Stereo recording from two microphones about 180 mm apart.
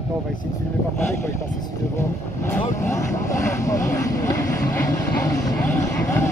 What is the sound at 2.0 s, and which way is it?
Speech, 15° left (ahead or behind).